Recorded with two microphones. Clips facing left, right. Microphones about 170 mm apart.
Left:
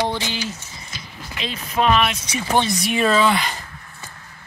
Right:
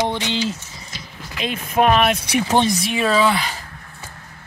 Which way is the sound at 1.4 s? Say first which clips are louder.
Right 3 dB; 50° right (ahead or behind).